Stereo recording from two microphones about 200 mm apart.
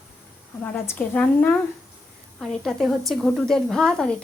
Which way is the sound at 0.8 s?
10° left (ahead or behind).